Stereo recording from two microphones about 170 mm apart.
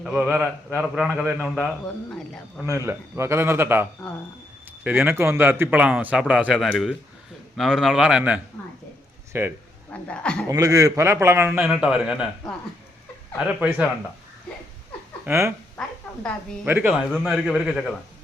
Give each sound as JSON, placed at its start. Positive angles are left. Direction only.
{"t": 0.0, "sound": "a man's voice", "side_deg": -5}
{"t": 2.6, "sound": "a man's voice", "side_deg": -15}
{"t": 9.9, "sound": "a woman's voice", "side_deg": 5}
{"t": 10.5, "sound": "a man's voice", "side_deg": -20}
{"t": 15.3, "sound": "a man's voice", "side_deg": -15}
{"t": 16.6, "sound": "a man's voice", "side_deg": -10}